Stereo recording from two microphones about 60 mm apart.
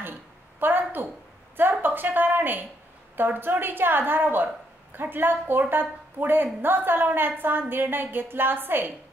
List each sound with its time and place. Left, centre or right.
0.6 s a woman's voice: right